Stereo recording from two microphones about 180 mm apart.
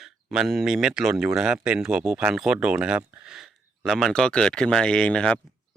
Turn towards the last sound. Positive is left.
turn(degrees=5)  # may be behind; listen again after turning